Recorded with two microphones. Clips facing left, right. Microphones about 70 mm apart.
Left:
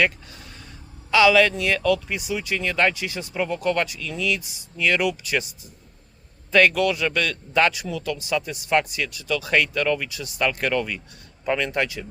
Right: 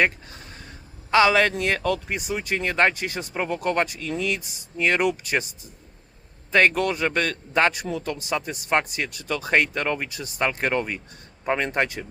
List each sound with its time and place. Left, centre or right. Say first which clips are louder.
0.0 s a sound: even; right
1.1 s speech: left 1 dB; right
6.5 s speech: left 1 dB; right